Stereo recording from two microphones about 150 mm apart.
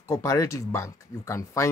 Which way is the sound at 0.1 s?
20° left (ahead or behind).